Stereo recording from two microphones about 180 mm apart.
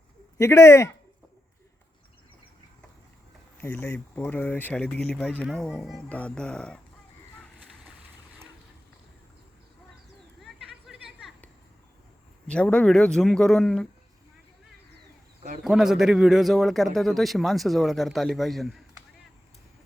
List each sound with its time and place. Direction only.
0.3 s speech: 15° left (ahead or behind)
3.6 s speech: 10° left (ahead or behind)
10.4 s a sound: centre (ahead or behind)
12.5 s a man's voice: 5° left (ahead or behind)
15.6 s a man's voice: 5° right (ahead or behind)